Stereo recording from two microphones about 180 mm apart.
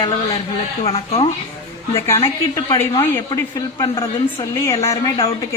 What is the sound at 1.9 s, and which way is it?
A woman's voice, 15° left (ahead or behind).